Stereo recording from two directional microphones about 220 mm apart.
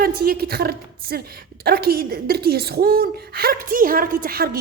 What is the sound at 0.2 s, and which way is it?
Speech, 45° right (ahead or behind).